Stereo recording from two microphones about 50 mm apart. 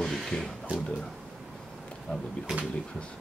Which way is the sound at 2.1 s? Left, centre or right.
Centre.